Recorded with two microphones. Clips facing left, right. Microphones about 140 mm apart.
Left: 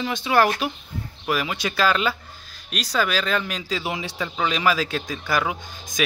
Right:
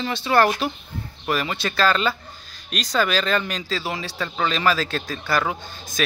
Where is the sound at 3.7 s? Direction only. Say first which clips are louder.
Left 2 dB; 15° left (ahead or behind).